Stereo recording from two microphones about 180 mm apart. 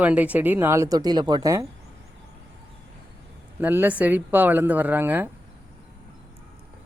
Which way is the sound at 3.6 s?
10° right (ahead or behind).